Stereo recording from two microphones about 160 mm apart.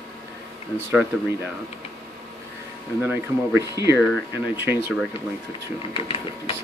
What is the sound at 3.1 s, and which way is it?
Speech, 15° right (ahead or behind).